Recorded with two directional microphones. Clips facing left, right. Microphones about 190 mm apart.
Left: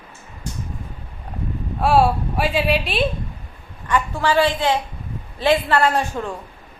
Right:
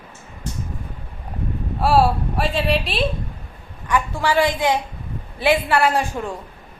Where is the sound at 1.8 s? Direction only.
Centre (ahead or behind).